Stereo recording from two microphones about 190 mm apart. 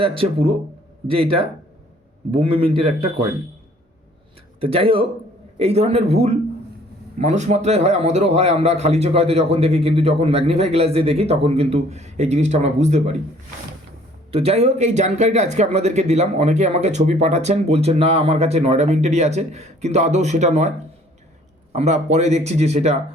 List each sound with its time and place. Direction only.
0.0 s a man's voice: 30° right (ahead or behind)
2.3 s a man's voice: 25° right (ahead or behind)
4.6 s a man's voice: 30° right (ahead or behind)
14.3 s speech: 30° right (ahead or behind)
21.8 s speech: 35° right (ahead or behind)